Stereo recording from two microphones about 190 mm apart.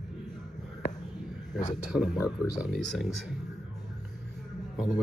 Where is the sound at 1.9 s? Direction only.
5° right (ahead or behind).